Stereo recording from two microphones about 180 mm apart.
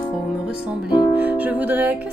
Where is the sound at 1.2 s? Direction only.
10° right (ahead or behind).